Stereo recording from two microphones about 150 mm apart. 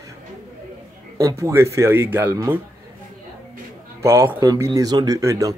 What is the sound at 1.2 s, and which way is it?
Speech, 20° right (ahead or behind).